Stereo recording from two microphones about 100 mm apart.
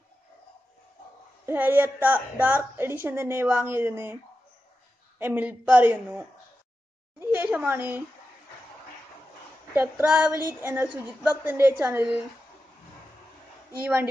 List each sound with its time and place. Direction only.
1.4 s a woman's voice: 20° right (ahead or behind)
5.2 s speech: 20° right (ahead or behind)
7.2 s a sound: 20° right (ahead or behind)
9.8 s a woman's voice: 15° right (ahead or behind)